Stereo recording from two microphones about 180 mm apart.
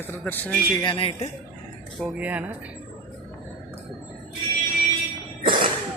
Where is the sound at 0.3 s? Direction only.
10° left (ahead or behind).